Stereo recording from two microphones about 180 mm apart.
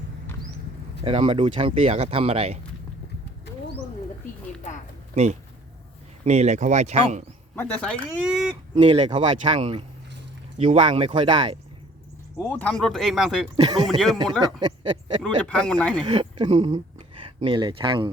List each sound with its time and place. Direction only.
1.0 s speech: 25° right (ahead or behind)
5.1 s speech: 40° right (ahead or behind)
7.5 s speech: 10° left (ahead or behind)
8.3 s speech: 5° right (ahead or behind)
8.7 s speech: 35° right (ahead or behind)
12.4 s speech: 10° left (ahead or behind)
14.4 s speech: 25° right (ahead or behind)
15.2 s speech: 5° left (ahead or behind)
16.0 s speech: 25° right (ahead or behind)